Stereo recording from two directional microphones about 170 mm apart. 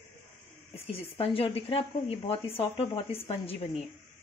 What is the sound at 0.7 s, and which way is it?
Speech, 35° left (ahead or behind).